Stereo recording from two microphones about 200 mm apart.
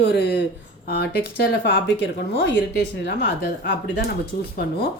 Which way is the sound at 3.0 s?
60° left (ahead or behind).